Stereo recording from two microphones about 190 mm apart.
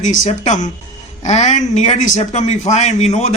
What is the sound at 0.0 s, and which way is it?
A man's voice, 40° left (ahead or behind).